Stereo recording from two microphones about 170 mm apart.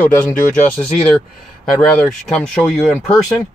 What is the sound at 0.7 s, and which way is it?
Speech, 5° left (ahead or behind).